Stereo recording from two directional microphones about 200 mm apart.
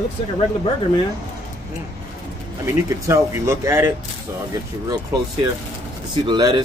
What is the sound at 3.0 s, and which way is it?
Speech, 15° right (ahead or behind).